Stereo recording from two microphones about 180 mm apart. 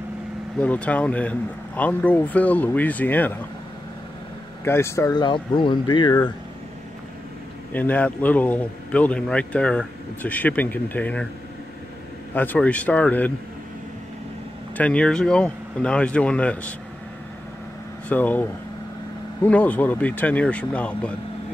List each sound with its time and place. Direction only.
0.6 s a man's voice: 5° left (ahead or behind)
4.6 s speech: 15° left (ahead or behind)
7.7 s a man's voice: 10° left (ahead or behind)
12.4 s a man's voice: 10° left (ahead or behind)
14.8 s a man's voice: 5° left (ahead or behind)
18.0 s a man's voice: 10° left (ahead or behind)